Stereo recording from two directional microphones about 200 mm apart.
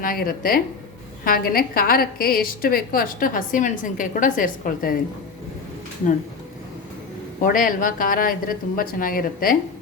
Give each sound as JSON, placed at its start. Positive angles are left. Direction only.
{"t": 0.0, "sound": "a woman's voice", "side_deg": 45}
{"t": 7.4, "sound": "a woman's voice", "side_deg": 45}